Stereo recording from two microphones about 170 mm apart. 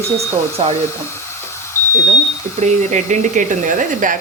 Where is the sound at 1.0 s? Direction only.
15° left (ahead or behind).